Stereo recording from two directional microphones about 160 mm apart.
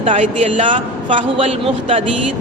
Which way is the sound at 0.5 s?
35° right (ahead or behind).